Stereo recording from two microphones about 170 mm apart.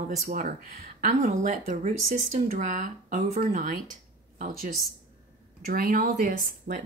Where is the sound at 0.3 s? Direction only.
50° right (ahead or behind).